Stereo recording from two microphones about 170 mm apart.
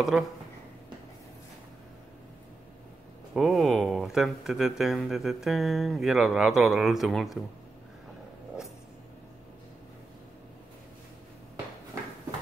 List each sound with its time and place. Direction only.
0.1 s speech: centre (ahead or behind)
3.3 s speech: centre (ahead or behind)